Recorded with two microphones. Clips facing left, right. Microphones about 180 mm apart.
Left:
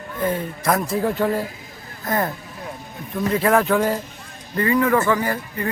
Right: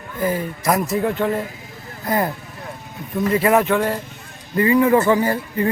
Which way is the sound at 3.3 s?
Centre (ahead or behind).